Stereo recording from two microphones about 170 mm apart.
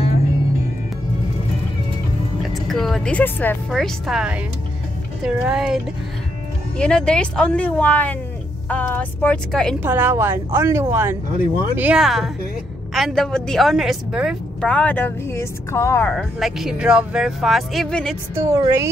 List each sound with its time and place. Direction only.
2.4 s music: centre (ahead or behind)
3.7 s speech: centre (ahead or behind)
6.8 s speech: 5° left (ahead or behind)
9.8 s a woman's voice: 10° right (ahead or behind)
14.7 s speech: 10° left (ahead or behind)
16.1 s speech: centre (ahead or behind)
18.3 s a woman's voice: 15° right (ahead or behind)